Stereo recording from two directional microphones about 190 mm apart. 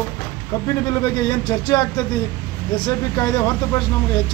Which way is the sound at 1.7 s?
20° left (ahead or behind).